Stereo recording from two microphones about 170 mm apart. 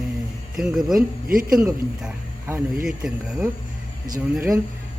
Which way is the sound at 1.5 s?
5° right (ahead or behind).